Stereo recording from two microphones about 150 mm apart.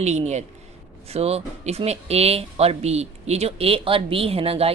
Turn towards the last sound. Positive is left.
turn(degrees=-40)  # may be behind; listen again after turning